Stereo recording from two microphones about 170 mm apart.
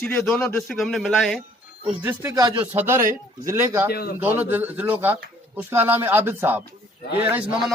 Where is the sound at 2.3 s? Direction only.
25° right (ahead or behind).